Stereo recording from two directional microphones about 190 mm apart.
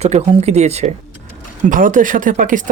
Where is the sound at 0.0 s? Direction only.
35° right (ahead or behind).